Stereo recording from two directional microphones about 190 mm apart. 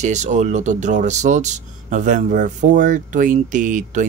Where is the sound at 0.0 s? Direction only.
40° right (ahead or behind).